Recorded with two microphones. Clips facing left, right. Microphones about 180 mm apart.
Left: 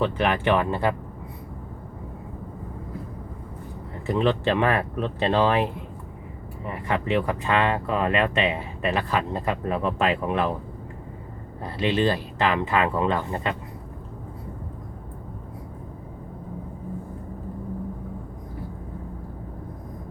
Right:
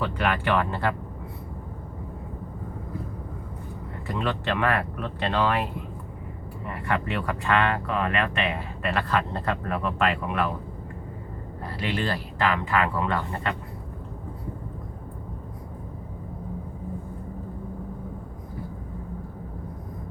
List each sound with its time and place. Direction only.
0.0 s speech: 20° left (ahead or behind)
4.2 s speech: 25° left (ahead or behind)
6.8 s speech: 20° left (ahead or behind)
9.7 s speech: 25° left (ahead or behind)
11.6 s speech: 20° left (ahead or behind)